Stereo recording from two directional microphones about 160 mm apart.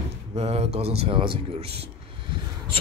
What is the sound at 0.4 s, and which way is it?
Speech, 40° right (ahead or behind).